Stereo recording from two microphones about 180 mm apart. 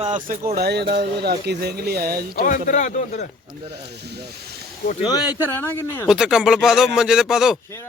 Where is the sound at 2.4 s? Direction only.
45° left (ahead or behind).